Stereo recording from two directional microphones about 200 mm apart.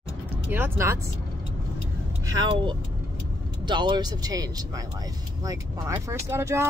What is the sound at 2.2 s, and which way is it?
Vehicle, 20° right (ahead or behind).